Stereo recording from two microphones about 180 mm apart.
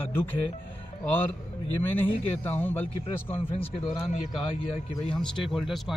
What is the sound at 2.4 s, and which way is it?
Speech, 10° left (ahead or behind).